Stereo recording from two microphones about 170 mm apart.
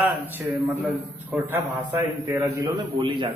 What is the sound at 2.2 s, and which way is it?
A man's voice, 20° right (ahead or behind).